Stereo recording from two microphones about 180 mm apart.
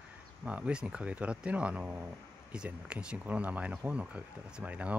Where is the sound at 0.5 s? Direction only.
5° right (ahead or behind).